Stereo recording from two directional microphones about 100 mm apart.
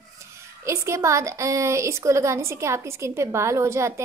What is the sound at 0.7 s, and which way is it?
A woman's voice, 30° right (ahead or behind).